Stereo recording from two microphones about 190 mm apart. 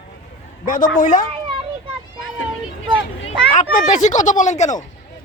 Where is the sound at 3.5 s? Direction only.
40° left (ahead or behind).